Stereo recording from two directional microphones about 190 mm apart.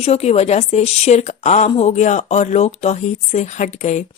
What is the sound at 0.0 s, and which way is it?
Speech, 35° left (ahead or behind).